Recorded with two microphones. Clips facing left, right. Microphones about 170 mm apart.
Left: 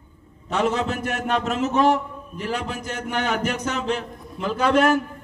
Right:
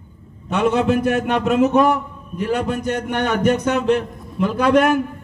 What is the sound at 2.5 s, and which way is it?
A man's voice, 60° right (ahead or behind).